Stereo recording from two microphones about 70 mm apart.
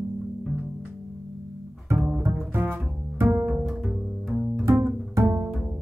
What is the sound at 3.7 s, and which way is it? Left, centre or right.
Bowed string instrument, centre.